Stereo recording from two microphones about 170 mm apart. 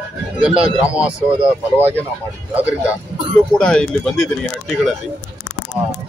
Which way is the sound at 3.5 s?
5° left (ahead or behind).